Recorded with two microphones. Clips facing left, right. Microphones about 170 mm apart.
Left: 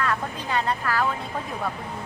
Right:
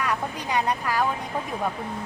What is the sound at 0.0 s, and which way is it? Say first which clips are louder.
Speech: even; 15° right (ahead or behind).